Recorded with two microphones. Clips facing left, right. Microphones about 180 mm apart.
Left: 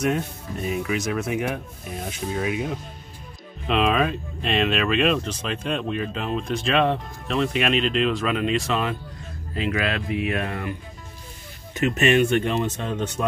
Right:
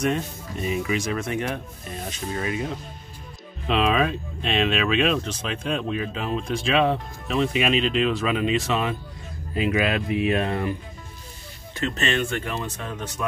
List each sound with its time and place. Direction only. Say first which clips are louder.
0.0 s speech: left 1 dB; 5° left (ahead or behind)
9.6 s speech: right 2 dB; 20° right (ahead or behind)
11.7 s speech: left 6 dB; 20° left (ahead or behind)